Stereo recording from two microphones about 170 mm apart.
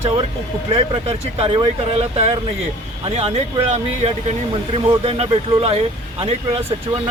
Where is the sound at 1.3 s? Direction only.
30° right (ahead or behind).